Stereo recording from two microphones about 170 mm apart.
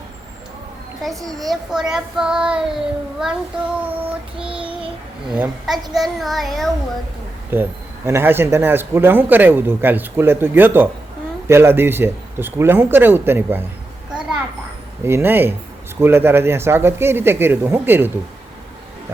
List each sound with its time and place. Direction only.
1.5 s a child's voice: 5° right (ahead or behind)
4.4 s a child's voice: 5° right (ahead or behind)
7.5 s speech: 15° right (ahead or behind)
15.0 s speech: 15° right (ahead or behind)